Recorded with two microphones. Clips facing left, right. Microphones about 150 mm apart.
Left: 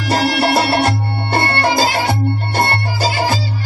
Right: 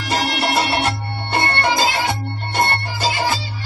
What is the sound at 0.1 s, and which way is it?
Music, 40° left (ahead or behind).